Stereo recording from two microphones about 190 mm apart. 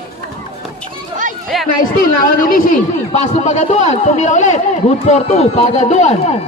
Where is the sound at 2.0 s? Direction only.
50° left (ahead or behind).